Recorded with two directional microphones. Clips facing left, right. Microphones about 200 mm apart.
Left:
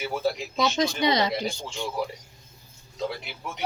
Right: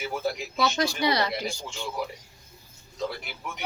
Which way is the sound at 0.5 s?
20° left (ahead or behind).